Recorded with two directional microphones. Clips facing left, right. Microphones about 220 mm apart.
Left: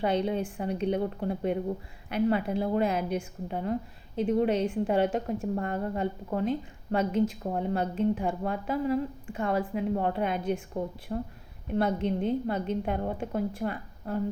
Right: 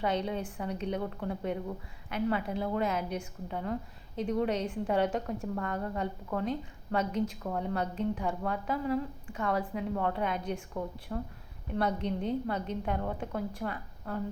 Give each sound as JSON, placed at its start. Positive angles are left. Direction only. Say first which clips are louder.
{"t": 0.0, "sound": "a woman's voice", "louder": "left 4 dB", "side_deg": 30}